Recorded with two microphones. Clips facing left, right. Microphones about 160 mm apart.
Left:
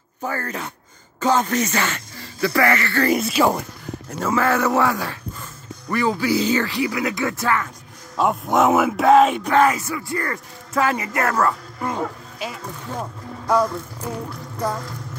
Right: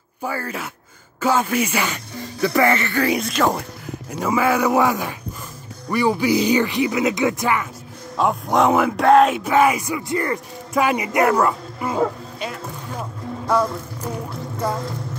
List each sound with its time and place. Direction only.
0.2 s speech: 10° right (ahead or behind)
3.0 s speech: centre (ahead or behind)
4.2 s speech: 10° right (ahead or behind)
8.2 s speech: centre (ahead or behind); by 11.5 s 15° right (ahead or behind)
11.8 s speech: centre (ahead or behind)